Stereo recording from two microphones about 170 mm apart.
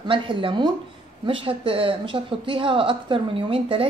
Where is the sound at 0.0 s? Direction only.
30° right (ahead or behind).